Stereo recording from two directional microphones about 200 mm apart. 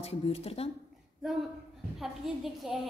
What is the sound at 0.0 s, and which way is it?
Speech, 30° left (ahead or behind).